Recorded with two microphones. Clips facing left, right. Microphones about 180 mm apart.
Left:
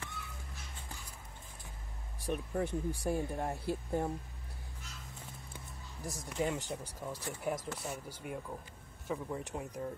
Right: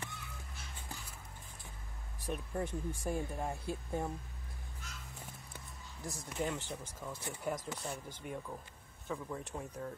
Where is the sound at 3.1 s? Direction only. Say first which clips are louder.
Left 3 dB; centre (ahead or behind).